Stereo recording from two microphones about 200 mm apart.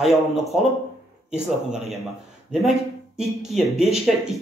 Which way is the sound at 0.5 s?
5° right (ahead or behind).